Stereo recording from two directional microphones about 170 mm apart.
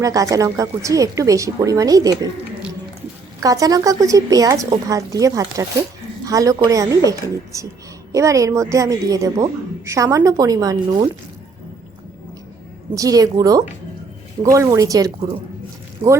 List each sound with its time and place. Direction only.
0.0 s a woman's voice: 20° right (ahead or behind)
3.4 s a woman's voice: 20° right (ahead or behind)
12.9 s a woman's voice: 20° right (ahead or behind)